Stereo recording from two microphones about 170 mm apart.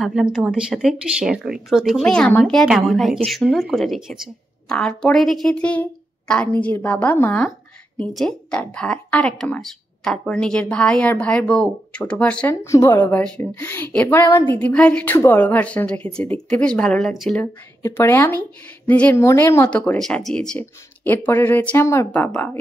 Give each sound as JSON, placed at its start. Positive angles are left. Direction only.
{"t": 0.0, "sound": "a woman's voice", "side_deg": 0}
{"t": 17.4, "sound": "a woman's voice", "side_deg": 15}